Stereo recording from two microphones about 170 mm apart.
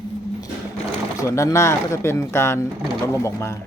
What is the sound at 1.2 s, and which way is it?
Speech, 20° left (ahead or behind).